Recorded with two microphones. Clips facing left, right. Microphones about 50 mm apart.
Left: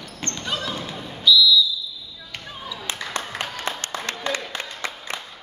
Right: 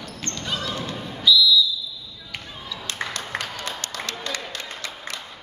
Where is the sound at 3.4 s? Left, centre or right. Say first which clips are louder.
Left 2 dB; left.